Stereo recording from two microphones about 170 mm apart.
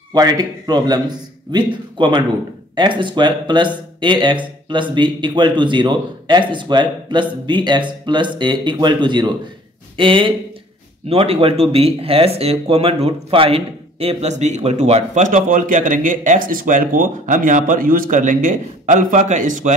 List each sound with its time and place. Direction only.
0.1 s speech: 25° right (ahead or behind); by 19.7 s 45° right (ahead or behind)